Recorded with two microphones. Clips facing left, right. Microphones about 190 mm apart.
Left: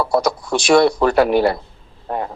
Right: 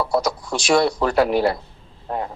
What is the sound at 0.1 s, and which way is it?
A man's voice, 60° left (ahead or behind).